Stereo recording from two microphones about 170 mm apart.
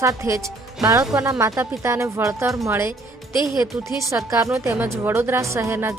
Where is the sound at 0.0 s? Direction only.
20° right (ahead or behind).